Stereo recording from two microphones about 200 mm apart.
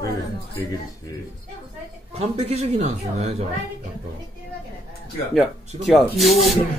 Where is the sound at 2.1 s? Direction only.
30° right (ahead or behind).